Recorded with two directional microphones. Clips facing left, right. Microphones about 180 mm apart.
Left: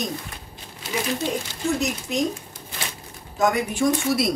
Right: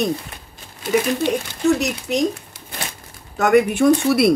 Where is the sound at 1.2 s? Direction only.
70° right (ahead or behind).